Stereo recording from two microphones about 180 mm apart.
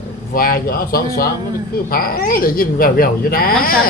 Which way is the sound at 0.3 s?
55° left (ahead or behind).